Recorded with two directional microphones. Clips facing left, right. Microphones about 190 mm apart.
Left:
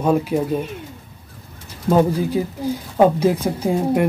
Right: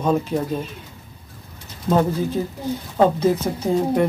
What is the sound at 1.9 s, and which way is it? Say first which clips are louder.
Speech: left 3 dB; 10° left (ahead or behind).